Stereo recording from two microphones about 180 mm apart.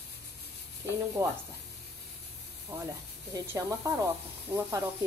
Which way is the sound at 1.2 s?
15° right (ahead or behind).